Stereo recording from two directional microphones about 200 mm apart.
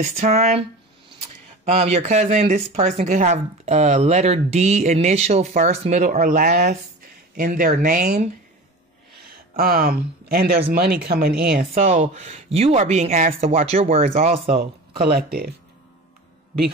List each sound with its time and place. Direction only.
0.1 s speech: 35° right (ahead or behind)
1.7 s speech: 30° right (ahead or behind)
14.6 s speech: 50° right (ahead or behind)